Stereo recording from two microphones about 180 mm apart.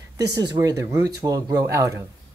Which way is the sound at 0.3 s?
20° right (ahead or behind).